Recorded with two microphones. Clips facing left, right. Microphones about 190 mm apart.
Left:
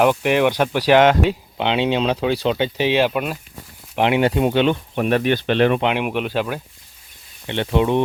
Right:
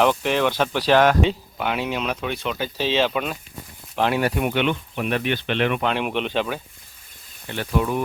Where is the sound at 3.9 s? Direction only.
20° left (ahead or behind).